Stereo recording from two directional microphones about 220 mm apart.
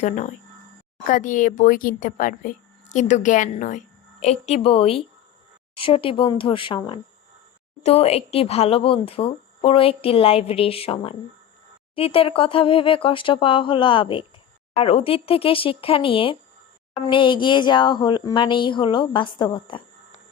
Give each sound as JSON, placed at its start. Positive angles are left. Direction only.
{"t": 1.0, "sound": "speech", "side_deg": 35}